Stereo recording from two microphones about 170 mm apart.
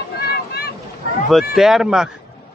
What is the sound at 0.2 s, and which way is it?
Boat, 65° left (ahead or behind).